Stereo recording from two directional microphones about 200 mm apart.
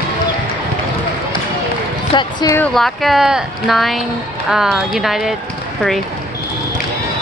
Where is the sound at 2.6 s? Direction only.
Centre (ahead or behind).